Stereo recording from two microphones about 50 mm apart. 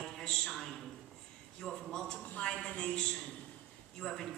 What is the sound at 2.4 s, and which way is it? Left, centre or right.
Speech, left.